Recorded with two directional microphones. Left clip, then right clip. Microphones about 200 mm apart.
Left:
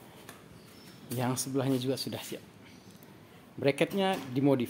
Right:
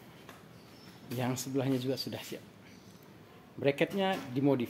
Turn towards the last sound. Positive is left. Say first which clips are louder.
# left 2 dB
turn(degrees=15)  # may be behind; listen again after turning